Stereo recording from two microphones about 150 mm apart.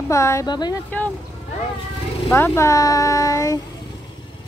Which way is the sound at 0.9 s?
10° left (ahead or behind).